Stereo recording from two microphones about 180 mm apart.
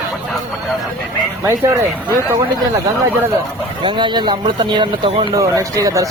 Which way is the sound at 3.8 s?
25° right (ahead or behind).